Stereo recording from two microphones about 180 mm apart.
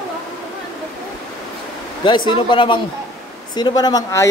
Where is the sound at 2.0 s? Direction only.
25° left (ahead or behind).